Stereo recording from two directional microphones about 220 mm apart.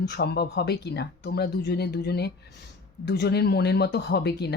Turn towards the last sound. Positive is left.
turn(degrees=50)  # may be behind; listen again after turning